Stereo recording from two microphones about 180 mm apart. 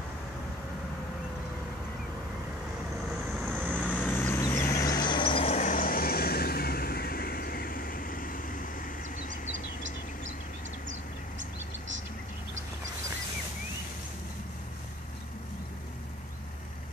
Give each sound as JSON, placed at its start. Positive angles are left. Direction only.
{"t": 3.4, "sound": "vehicle", "side_deg": -10}
{"t": 3.8, "sound": "vehicle", "side_deg": 10}
{"t": 4.9, "sound": "vehicle", "side_deg": 25}
{"t": 9.5, "sound": "bird", "side_deg": -90}